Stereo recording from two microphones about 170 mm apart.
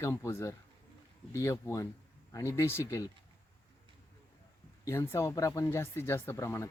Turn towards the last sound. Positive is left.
turn(degrees=15)  # may be behind; listen again after turning